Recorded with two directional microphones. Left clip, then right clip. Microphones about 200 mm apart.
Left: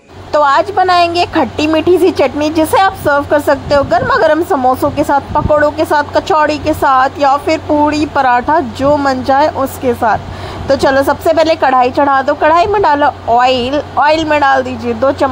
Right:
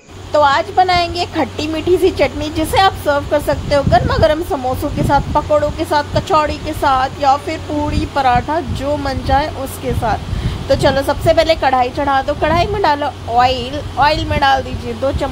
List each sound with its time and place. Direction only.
0.3 s speech: 25° left (ahead or behind)